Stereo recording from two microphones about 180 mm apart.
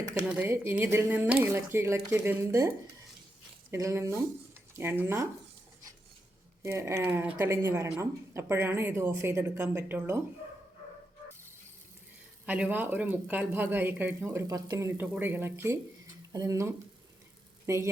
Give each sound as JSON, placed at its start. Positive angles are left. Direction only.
{"t": 0.1, "sound": "speech", "side_deg": -10}
{"t": 6.6, "sound": "speech", "side_deg": -15}
{"t": 12.5, "sound": "speech", "side_deg": -10}